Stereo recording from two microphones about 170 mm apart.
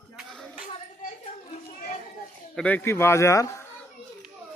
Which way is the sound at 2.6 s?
10° left (ahead or behind).